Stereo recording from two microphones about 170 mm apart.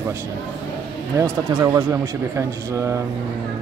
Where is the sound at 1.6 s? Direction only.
20° right (ahead or behind).